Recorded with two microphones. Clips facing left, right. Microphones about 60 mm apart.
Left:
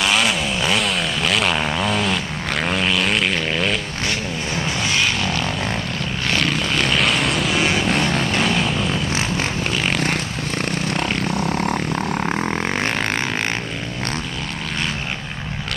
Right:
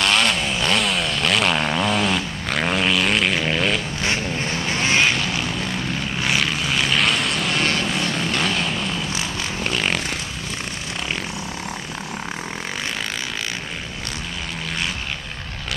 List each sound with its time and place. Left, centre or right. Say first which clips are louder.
0.0 s chainsaw: left 1 dB; centre
4.0 s vehicle: right 1 dB; right
6.2 s vehicle: left 2 dB; centre
9.7 s vehicle: right 1 dB; centre
10.9 s vehicle: left 6 dB; left